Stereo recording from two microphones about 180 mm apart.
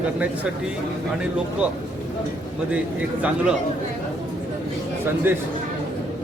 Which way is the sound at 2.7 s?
5° right (ahead or behind).